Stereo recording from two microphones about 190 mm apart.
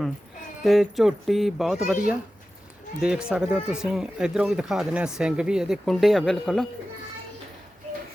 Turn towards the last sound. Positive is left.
turn(degrees=0)  # may be behind; listen again after turning